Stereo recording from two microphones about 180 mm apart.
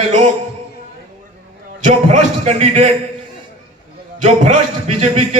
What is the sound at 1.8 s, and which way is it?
A man's voice, 40° right (ahead or behind).